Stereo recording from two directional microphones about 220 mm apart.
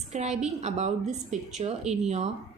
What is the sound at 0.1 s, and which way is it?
A woman's voice, 30° right (ahead or behind).